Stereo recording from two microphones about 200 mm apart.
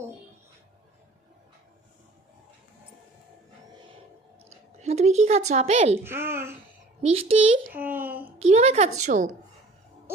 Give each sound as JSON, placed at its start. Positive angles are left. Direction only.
{"t": 4.4, "sound": "speech", "side_deg": -35}
{"t": 6.1, "sound": "a child's voice", "side_deg": -10}
{"t": 7.0, "sound": "a child's voice", "side_deg": -30}
{"t": 7.7, "sound": "speech", "side_deg": -10}
{"t": 8.4, "sound": "speech", "side_deg": -30}